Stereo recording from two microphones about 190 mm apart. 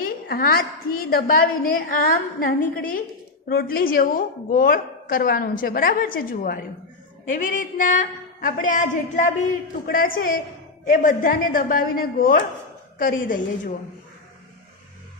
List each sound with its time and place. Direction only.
0.0 s a woman's voice: 50° left (ahead or behind)